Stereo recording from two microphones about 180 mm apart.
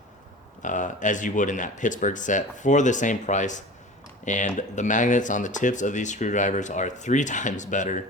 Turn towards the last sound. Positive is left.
turn(degrees=45)  # may be behind; listen again after turning